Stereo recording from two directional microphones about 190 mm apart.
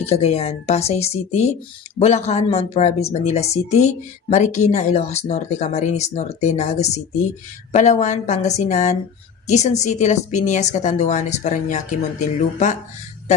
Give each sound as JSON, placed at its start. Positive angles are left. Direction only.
{"t": 0.0, "sound": "speech", "side_deg": 35}